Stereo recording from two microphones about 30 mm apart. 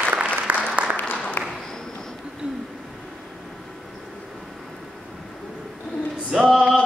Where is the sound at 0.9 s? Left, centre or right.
Left.